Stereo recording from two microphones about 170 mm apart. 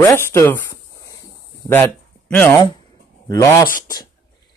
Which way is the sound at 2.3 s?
10° left (ahead or behind).